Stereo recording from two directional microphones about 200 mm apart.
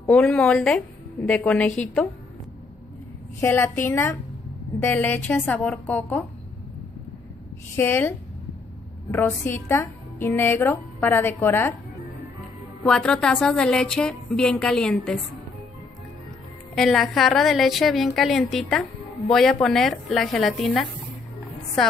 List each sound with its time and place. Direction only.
0.0 s a woman's voice: 5° left (ahead or behind)
3.3 s a woman's voice: 10° left (ahead or behind)
7.7 s a woman's voice: 10° left (ahead or behind)
9.1 s a woman's voice: 10° left (ahead or behind)
12.8 s a woman's voice: 5° left (ahead or behind)
16.7 s a woman's voice: centre (ahead or behind)